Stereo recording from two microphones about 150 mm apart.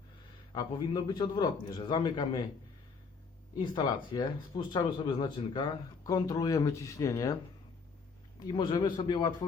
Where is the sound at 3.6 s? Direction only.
30° left (ahead or behind).